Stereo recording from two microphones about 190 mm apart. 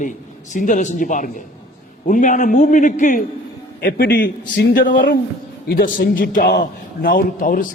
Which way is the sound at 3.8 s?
50° left (ahead or behind).